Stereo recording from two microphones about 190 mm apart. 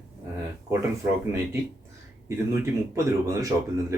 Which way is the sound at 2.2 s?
15° right (ahead or behind).